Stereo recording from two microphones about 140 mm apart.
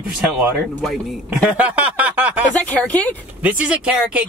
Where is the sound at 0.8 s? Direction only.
5° right (ahead or behind).